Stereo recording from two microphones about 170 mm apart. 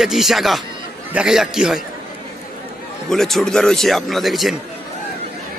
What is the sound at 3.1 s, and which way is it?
A man's voice, centre (ahead or behind).